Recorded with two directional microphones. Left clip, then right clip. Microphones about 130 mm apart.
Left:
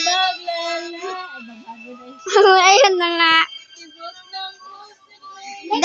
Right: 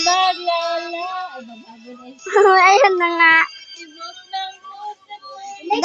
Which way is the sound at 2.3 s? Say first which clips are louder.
Even; 20° left (ahead or behind).